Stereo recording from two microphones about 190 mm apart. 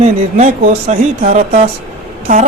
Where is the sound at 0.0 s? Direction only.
35° right (ahead or behind).